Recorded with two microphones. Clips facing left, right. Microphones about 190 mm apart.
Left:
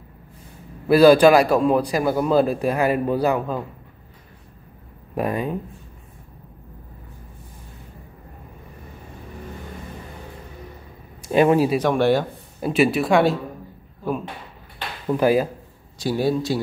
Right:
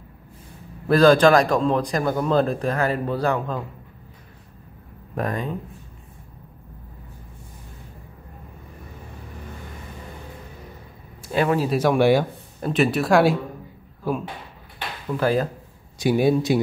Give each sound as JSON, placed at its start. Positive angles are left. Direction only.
{"t": 0.8, "sound": "a man's voice", "side_deg": 10}
{"t": 5.1, "sound": "a man's voice", "side_deg": 10}
{"t": 11.3, "sound": "a man's voice", "side_deg": 15}
{"t": 11.7, "sound": "speech", "side_deg": -5}
{"t": 12.5, "sound": "speech", "side_deg": 5}
{"t": 15.1, "sound": "a man's voice", "side_deg": 10}
{"t": 16.0, "sound": "speech", "side_deg": -15}